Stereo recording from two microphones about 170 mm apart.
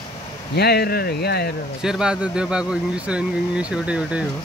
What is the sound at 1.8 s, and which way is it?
Speech, 5° right (ahead or behind).